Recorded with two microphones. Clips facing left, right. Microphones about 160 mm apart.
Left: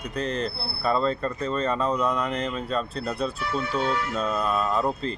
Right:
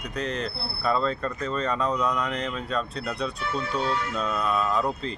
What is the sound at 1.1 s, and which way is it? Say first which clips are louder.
Wind chime: left 2 dB; 35° left (ahead or behind).